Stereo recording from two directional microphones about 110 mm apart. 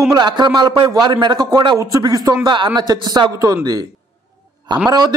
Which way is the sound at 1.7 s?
30° right (ahead or behind).